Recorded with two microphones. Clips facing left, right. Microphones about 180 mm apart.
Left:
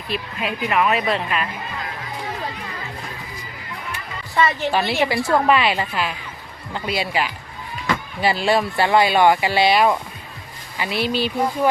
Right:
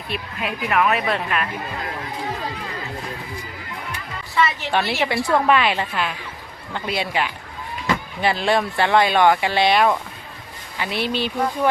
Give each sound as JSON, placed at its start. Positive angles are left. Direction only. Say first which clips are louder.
{"t": 0.1, "sound": "speech", "louder": "left 2 dB", "side_deg": 0}
{"t": 4.7, "sound": "speech", "louder": "left 1 dB", "side_deg": 0}